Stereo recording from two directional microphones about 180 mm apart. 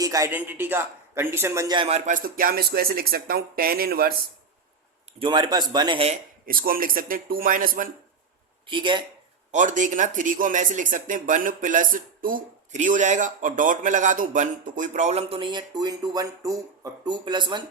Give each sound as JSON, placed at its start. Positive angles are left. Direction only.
{"t": 0.0, "sound": "a man's voice", "side_deg": -20}
{"t": 2.0, "sound": "speech", "side_deg": -50}
{"t": 5.2, "sound": "speech", "side_deg": -25}
{"t": 6.4, "sound": "speech", "side_deg": -55}
{"t": 8.6, "sound": "speech", "side_deg": -25}
{"t": 9.5, "sound": "speech", "side_deg": -45}